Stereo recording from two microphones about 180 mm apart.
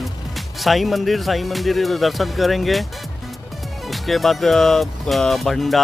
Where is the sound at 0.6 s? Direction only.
Centre (ahead or behind).